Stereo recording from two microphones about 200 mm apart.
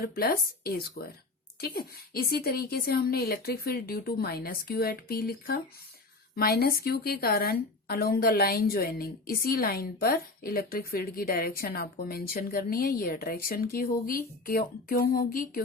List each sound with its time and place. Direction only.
0.0 s a woman's voice: 50° left (ahead or behind)